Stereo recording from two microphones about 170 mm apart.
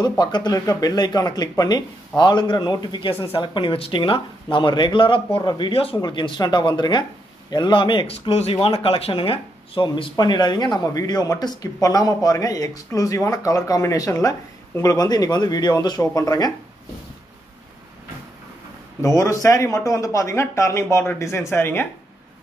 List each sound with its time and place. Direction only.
0.2 s speech: 25° left (ahead or behind)
18.9 s speech: 20° left (ahead or behind)